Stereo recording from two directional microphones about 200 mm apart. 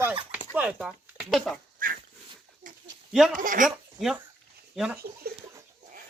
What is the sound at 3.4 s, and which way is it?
Speech, 40° right (ahead or behind).